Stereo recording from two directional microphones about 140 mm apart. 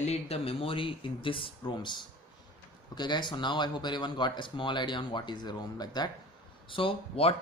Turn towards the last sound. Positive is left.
turn(degrees=40)  # may be behind; listen again after turning